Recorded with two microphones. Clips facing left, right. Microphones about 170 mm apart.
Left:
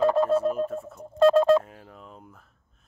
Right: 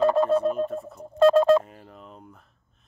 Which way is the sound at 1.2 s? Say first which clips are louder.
Right 1 dB; 65° right (ahead or behind).